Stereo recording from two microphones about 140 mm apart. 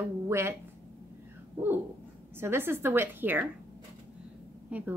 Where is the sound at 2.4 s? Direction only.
15° right (ahead or behind).